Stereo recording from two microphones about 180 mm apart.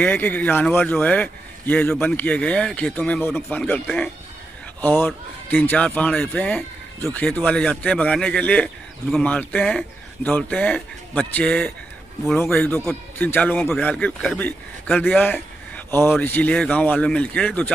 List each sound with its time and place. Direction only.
0.0 s speech: 10° left (ahead or behind)
15.3 s a sound: 10° left (ahead or behind)
16.1 s speech: 10° left (ahead or behind)